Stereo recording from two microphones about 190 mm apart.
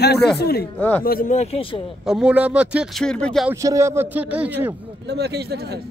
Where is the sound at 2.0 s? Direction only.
5° right (ahead or behind).